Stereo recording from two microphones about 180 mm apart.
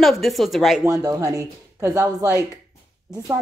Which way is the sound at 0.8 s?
20° right (ahead or behind).